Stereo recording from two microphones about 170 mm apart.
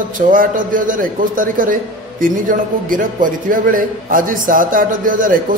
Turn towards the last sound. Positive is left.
turn(degrees=-55)  # may be behind; listen again after turning